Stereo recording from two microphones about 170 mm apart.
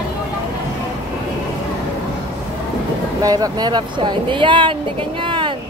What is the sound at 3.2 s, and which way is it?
Speech, 25° right (ahead or behind).